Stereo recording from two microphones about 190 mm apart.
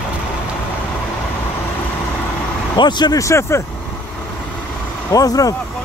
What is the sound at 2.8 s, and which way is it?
Speech, 25° left (ahead or behind).